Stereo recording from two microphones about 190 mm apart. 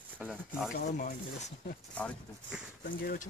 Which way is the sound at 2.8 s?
50° left (ahead or behind).